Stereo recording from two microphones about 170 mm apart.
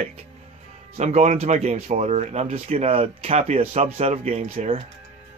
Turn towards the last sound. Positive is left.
turn(degrees=-35)  # may be behind; listen again after turning